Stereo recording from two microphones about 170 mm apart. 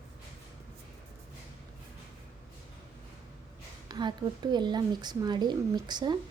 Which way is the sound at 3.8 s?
25° right (ahead or behind).